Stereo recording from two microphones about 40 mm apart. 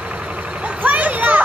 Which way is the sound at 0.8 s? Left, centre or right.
Right.